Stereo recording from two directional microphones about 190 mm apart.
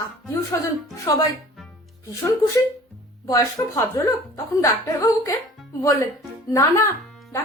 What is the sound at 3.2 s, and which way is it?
Speech, 15° left (ahead or behind).